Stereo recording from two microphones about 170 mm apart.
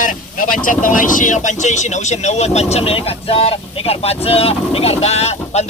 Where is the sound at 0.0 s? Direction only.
50° left (ahead or behind).